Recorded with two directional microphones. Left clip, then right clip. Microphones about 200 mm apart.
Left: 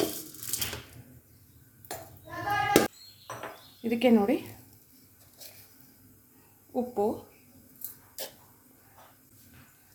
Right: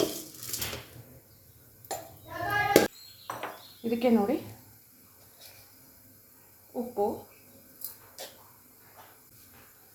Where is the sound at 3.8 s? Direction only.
15° left (ahead or behind).